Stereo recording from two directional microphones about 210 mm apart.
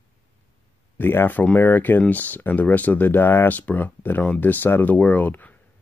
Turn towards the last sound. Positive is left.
turn(degrees=10)  # may be behind; listen again after turning